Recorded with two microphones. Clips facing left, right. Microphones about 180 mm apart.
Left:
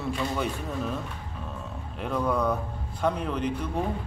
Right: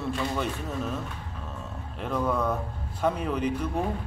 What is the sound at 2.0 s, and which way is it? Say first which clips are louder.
Speech: left 1 dB; centre (ahead or behind).